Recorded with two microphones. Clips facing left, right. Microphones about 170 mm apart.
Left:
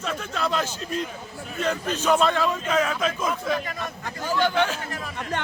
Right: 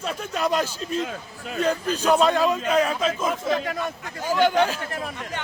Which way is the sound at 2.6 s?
35° right (ahead or behind).